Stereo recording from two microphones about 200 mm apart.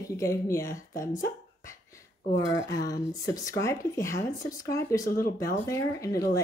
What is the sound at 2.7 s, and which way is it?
A woman's voice, 20° left (ahead or behind).